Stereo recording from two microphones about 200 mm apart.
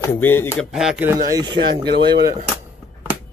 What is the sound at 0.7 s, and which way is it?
Speech, 5° right (ahead or behind).